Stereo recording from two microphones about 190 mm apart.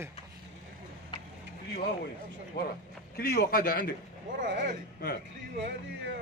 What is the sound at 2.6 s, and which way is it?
A man's voice, 55° left (ahead or behind).